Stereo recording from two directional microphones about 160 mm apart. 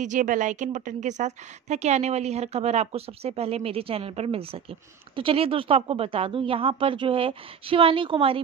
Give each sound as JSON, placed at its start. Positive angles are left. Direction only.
{"t": 0.0, "sound": "a woman's voice", "side_deg": -50}